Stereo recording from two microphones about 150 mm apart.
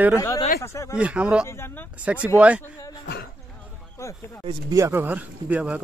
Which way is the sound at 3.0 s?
90° left.